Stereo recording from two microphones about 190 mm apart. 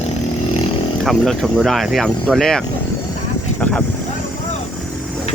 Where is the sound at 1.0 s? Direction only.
Centre (ahead or behind).